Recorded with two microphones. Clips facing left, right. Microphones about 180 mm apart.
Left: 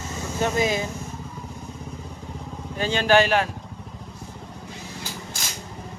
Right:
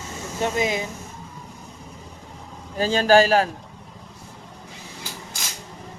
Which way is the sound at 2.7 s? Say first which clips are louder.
Right 3 dB; 40° right (ahead or behind).